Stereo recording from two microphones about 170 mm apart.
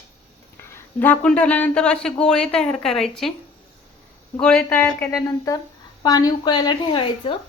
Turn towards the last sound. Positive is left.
turn(degrees=25)  # may be behind; listen again after turning